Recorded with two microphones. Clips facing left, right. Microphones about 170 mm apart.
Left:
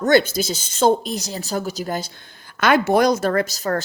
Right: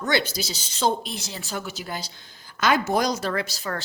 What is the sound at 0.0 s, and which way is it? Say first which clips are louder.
A woman's voice: left 9 dB; 45° left (ahead or behind).